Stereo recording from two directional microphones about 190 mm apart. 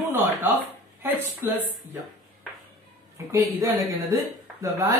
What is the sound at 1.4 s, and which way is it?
Speech, 10° right (ahead or behind).